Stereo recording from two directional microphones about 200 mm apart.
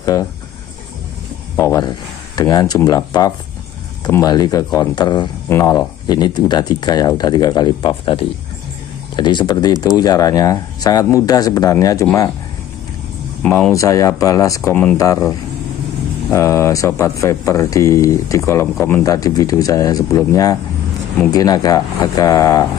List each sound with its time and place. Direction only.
0.0 s speech: 15° left (ahead or behind)
1.6 s speech: 20° left (ahead or behind)
13.4 s speech: 5° left (ahead or behind)
13.7 s speech: 15° left (ahead or behind)